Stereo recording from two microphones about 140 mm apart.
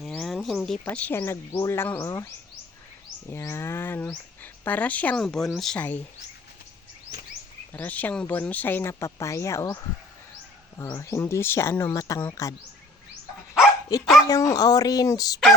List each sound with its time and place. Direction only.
0.0 s a sound: centre (ahead or behind)
0.9 s speech: 10° left (ahead or behind)
7.7 s speech: 15° left (ahead or behind)
10.8 s speech: 25° left (ahead or behind)
13.9 s speech: 25° left (ahead or behind)